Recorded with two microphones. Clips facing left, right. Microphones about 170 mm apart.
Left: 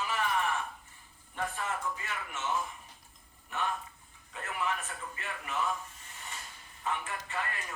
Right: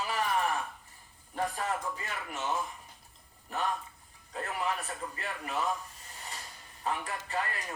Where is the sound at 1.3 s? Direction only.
35° right (ahead or behind).